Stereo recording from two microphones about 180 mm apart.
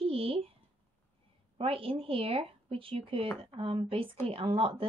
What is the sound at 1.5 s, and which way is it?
A woman's voice, 30° right (ahead or behind).